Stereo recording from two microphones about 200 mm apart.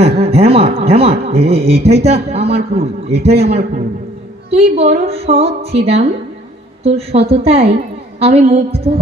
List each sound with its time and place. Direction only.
0.0 s speech: 30° right (ahead or behind)